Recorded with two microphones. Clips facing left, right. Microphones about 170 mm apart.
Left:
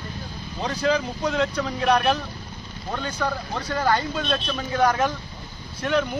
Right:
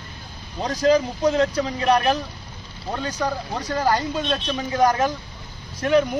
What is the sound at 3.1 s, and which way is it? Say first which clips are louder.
A man's voice: right 2 dB; 15° right (ahead or behind).